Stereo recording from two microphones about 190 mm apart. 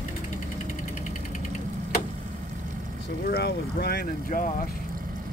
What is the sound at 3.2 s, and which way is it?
Speech, 55° left (ahead or behind).